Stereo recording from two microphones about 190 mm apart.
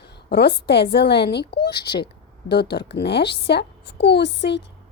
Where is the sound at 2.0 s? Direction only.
60° left (ahead or behind).